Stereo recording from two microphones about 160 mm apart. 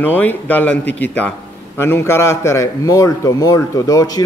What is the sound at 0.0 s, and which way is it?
A man's voice, 10° left (ahead or behind).